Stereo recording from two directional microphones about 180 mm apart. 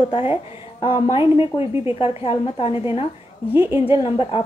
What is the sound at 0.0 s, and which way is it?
A woman's voice, 30° left (ahead or behind).